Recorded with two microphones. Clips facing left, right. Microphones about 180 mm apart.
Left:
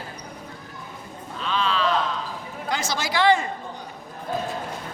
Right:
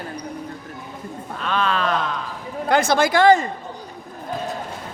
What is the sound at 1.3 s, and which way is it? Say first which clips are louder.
Speech: right 3 dB; 55° right (ahead or behind).